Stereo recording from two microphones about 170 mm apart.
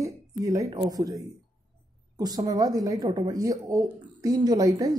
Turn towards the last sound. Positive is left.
turn(degrees=-20)  # may be behind; listen again after turning